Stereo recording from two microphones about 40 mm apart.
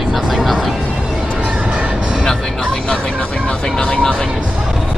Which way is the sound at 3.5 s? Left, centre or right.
Left.